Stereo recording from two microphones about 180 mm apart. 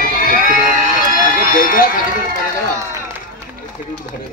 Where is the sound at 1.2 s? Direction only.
50° left (ahead or behind).